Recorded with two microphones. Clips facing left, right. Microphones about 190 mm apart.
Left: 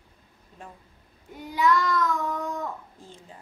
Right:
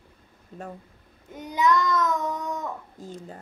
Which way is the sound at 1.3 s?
20° right (ahead or behind).